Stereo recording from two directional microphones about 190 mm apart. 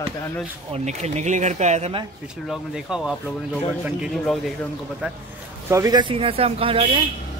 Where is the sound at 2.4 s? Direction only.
Centre (ahead or behind).